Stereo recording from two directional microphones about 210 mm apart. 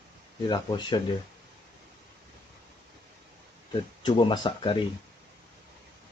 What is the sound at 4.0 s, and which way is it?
Speech, 20° left (ahead or behind).